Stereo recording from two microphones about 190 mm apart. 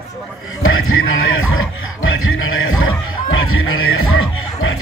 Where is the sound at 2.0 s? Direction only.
90° left.